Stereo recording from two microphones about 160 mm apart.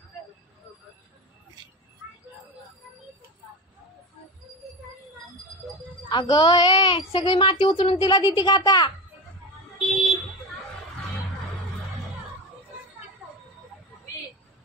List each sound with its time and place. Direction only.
6.0 s a woman's voice: 25° left (ahead or behind)
9.8 s vehicle: centre (ahead or behind)